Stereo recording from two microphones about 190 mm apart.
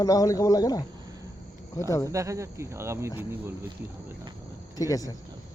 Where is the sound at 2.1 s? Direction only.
15° right (ahead or behind).